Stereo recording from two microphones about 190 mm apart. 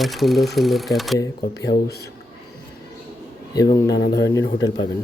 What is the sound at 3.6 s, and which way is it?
Speech, 20° left (ahead or behind).